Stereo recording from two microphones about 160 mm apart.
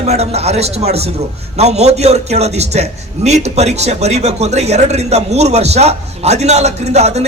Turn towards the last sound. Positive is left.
turn(degrees=-45)  # may be behind; listen again after turning